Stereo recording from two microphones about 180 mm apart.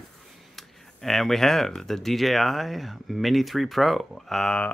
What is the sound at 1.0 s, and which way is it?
Speech, centre (ahead or behind).